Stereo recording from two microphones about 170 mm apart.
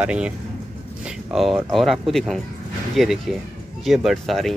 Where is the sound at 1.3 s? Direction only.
Centre (ahead or behind).